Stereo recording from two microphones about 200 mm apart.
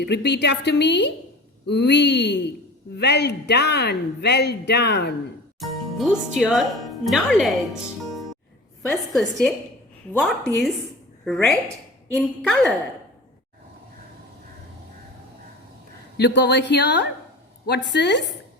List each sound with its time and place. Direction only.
0.0 s speech: 55° left (ahead or behind)
5.5 s a woman's voice: centre (ahead or behind)
11.3 s a woman's voice: 5° left (ahead or behind)
16.1 s speech: 55° left (ahead or behind)